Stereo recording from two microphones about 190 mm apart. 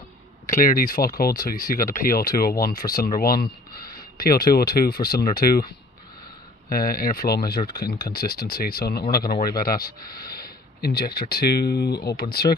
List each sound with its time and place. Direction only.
0.5 s speech: 50° left (ahead or behind)
6.7 s speech: 50° left (ahead or behind)